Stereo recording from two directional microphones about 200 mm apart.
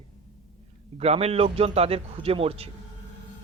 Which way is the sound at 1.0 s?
30° right (ahead or behind).